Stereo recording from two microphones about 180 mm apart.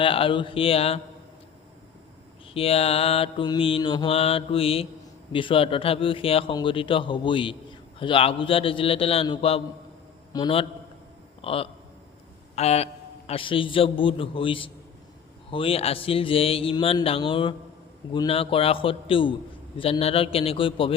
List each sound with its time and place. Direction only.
0.0 s mantra: 30° left (ahead or behind)
2.5 s mantra: 30° left (ahead or behind)
5.3 s a man's voice: 30° left (ahead or behind)
7.9 s mantra: 30° left (ahead or behind)
10.3 s a man's voice: 30° left (ahead or behind)
11.4 s mantra: 30° left (ahead or behind)
12.5 s a man's voice: 35° left (ahead or behind)
15.4 s mantra: 30° left (ahead or behind)